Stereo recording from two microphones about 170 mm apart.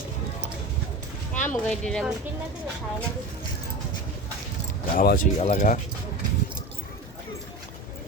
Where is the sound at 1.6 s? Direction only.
5° left (ahead or behind).